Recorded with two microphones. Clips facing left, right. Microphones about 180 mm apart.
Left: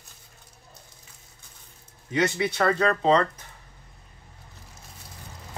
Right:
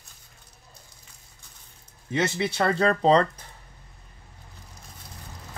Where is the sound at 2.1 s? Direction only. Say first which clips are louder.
Left 1 dB; 25° right (ahead or behind).